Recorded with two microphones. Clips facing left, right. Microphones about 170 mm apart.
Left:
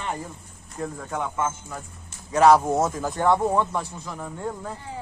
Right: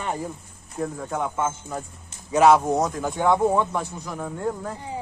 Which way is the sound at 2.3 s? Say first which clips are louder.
Even; centre (ahead or behind).